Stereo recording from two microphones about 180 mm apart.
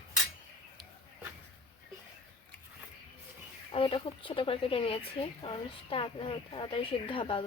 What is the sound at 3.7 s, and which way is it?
Speech, 30° left (ahead or behind).